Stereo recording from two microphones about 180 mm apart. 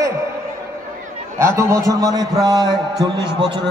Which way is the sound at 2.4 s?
20° right (ahead or behind).